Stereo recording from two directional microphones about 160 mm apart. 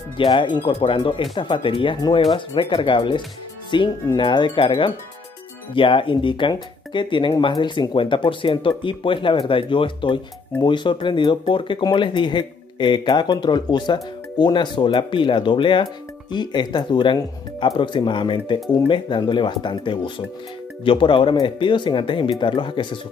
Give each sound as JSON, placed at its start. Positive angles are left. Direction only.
{"t": 0.2, "sound": "speech", "side_deg": 30}